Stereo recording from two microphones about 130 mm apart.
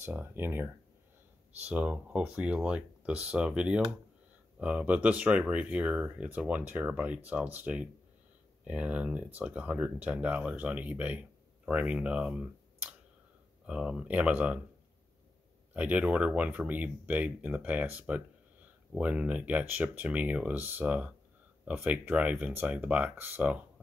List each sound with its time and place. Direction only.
0.0 s speech: 15° right (ahead or behind)
15.7 s speech: 10° right (ahead or behind)